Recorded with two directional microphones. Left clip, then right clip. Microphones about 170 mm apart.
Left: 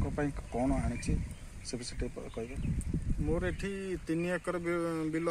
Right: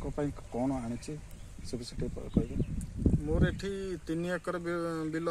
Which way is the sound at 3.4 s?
5° left (ahead or behind).